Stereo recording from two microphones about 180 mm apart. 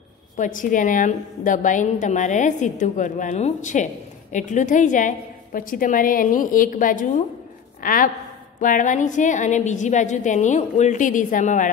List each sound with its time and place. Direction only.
0.4 s a woman's voice: 45° left (ahead or behind)